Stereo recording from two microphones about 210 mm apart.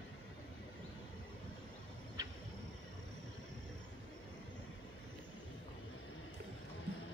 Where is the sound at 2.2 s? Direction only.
15° right (ahead or behind).